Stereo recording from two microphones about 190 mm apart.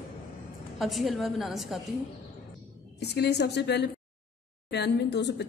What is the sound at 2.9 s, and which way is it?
A woman's voice, 60° left (ahead or behind).